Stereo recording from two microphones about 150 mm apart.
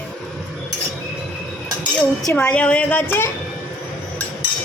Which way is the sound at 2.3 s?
10° left (ahead or behind).